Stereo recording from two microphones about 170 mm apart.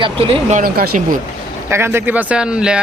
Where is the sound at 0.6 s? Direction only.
60° right (ahead or behind).